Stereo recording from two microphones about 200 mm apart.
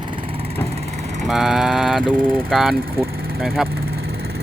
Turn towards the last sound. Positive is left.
turn(degrees=0)  # may be behind; listen again after turning